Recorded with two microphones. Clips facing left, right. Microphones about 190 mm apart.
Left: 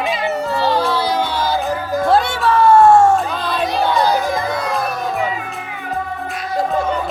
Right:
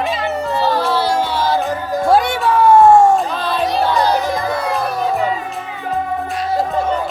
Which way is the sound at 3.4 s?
Centre (ahead or behind).